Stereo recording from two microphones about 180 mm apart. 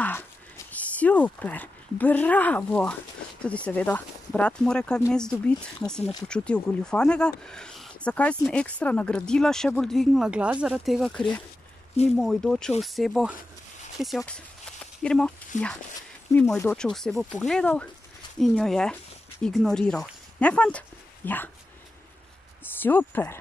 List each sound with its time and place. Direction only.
0.7 s speech: 10° left (ahead or behind)
15.5 s speech: 45° left (ahead or behind)
16.3 s speech: 10° left (ahead or behind)
22.6 s speech: 10° left (ahead or behind)